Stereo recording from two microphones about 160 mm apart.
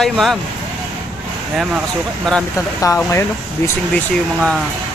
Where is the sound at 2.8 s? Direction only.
20° left (ahead or behind).